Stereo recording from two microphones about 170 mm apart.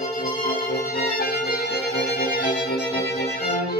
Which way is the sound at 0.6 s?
60° left (ahead or behind).